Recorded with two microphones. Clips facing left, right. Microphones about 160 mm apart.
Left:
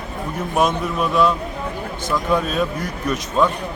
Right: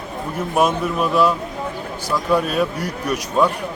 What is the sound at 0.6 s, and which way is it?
A man's voice, 5° right (ahead or behind).